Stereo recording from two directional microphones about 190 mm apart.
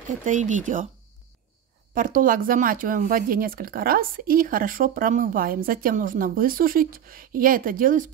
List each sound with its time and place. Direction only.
0.2 s speech: 40° right (ahead or behind)
2.0 s speech: 45° right (ahead or behind)